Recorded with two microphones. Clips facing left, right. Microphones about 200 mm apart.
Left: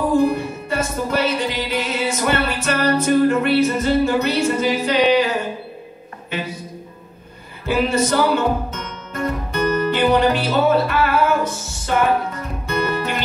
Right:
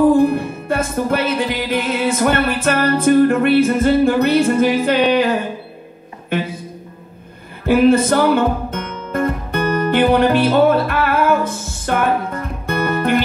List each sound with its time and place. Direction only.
0.2 s music: 55° right (ahead or behind)
6.3 s a man's voice: 55° right (ahead or behind)
7.6 s music: 55° right (ahead or behind)